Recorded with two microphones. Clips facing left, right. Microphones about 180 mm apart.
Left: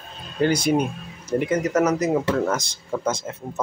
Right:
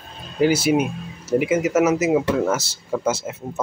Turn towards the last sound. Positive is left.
turn(degrees=-5)  # may be behind; listen again after turning